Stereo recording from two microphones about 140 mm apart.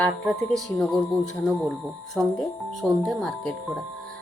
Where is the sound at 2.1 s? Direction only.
Centre (ahead or behind).